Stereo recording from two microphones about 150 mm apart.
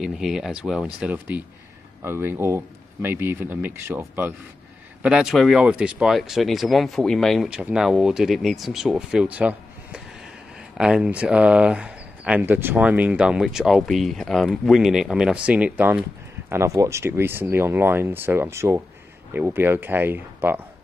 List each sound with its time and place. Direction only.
0.0 s speech: 5° right (ahead or behind)